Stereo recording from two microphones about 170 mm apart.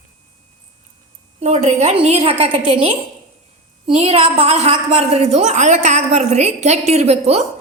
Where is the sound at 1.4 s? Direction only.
40° right (ahead or behind).